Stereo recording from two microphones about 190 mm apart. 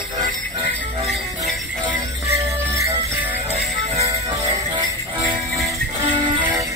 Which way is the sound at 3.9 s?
15° right (ahead or behind).